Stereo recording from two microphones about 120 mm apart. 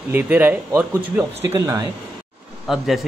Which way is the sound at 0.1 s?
15° right (ahead or behind).